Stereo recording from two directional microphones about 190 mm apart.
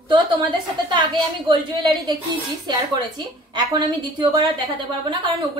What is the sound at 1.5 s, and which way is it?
Speech, 25° right (ahead or behind).